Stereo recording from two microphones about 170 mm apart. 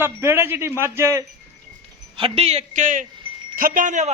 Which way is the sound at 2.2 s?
35° right (ahead or behind).